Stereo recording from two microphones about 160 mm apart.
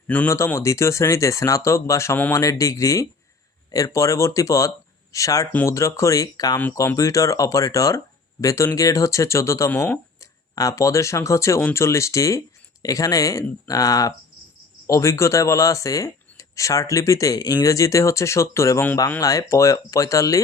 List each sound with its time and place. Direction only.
0.1 s speech: 15° left (ahead or behind)
6.6 s speech: 15° left (ahead or behind)